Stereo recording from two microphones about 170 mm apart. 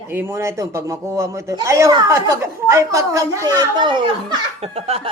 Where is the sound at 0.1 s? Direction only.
15° right (ahead or behind).